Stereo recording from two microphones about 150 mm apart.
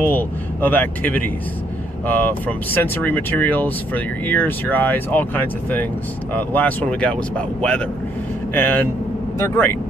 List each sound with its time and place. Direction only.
0.0 s speech: 10° left (ahead or behind)